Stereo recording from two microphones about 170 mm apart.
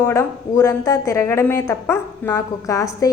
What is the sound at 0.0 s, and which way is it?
A woman's voice, 15° left (ahead or behind).